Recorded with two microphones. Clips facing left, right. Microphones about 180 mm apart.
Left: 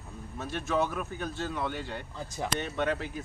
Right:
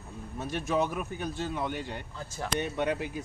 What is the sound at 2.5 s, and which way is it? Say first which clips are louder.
Speech: right 2 dB; 15° right (ahead or behind).